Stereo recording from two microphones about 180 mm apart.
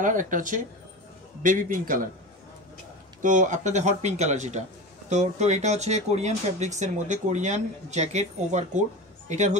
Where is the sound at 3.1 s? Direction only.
45° right (ahead or behind).